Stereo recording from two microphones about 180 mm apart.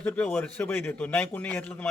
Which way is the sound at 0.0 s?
5° left (ahead or behind).